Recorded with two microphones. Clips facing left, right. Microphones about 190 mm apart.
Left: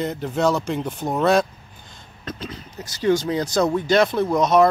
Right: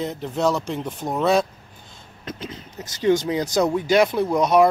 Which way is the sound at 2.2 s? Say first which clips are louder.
Left 1 dB; 20° right (ahead or behind).